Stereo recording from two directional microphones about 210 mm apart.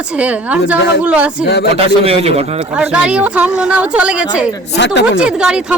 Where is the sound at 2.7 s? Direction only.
5° right (ahead or behind).